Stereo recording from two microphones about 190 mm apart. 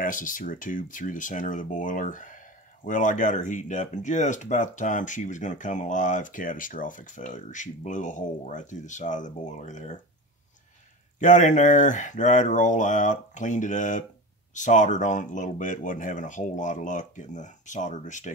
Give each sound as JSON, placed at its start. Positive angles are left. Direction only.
{"t": 0.0, "sound": "speech", "side_deg": 45}
{"t": 11.1, "sound": "speech", "side_deg": 40}